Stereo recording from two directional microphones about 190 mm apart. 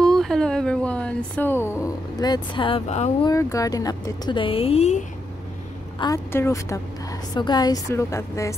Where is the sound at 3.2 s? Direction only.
15° left (ahead or behind); by 5.1 s 35° left (ahead or behind).